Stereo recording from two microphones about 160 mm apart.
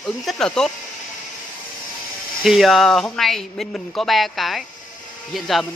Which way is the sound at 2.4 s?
Centre (ahead or behind).